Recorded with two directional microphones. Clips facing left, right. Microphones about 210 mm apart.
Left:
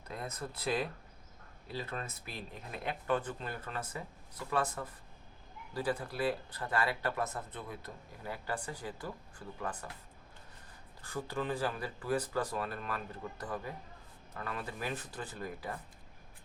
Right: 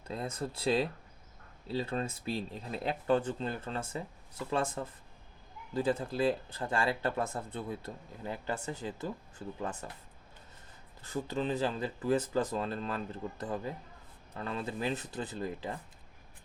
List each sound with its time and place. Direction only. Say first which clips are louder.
0.1 s speech: right 5 dB; 30° right (ahead or behind)
11.0 s speech: right 3 dB; 20° right (ahead or behind)